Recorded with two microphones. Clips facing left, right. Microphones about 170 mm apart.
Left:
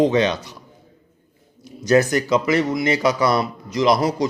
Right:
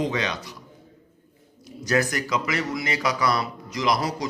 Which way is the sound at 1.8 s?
25° left (ahead or behind).